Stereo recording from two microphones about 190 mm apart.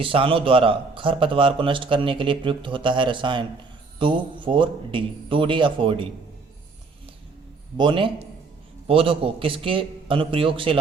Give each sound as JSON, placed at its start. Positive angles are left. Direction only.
{"t": 0.0, "sound": "speech", "side_deg": -30}
{"t": 7.8, "sound": "speech", "side_deg": -25}